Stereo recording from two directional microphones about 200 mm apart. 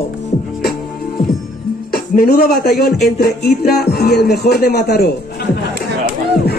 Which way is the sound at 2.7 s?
50° left (ahead or behind).